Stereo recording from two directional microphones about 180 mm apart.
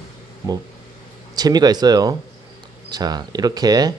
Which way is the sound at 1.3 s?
20° right (ahead or behind).